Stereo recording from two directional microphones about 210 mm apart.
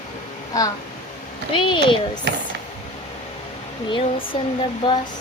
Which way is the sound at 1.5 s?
25° left (ahead or behind).